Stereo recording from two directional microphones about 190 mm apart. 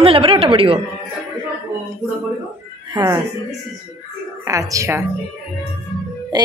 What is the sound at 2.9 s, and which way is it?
Speech, 20° right (ahead or behind).